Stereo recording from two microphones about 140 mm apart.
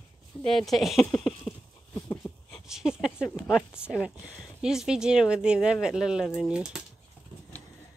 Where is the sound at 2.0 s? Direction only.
20° left (ahead or behind).